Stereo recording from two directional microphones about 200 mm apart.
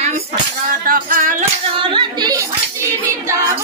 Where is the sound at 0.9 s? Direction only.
45° right (ahead or behind).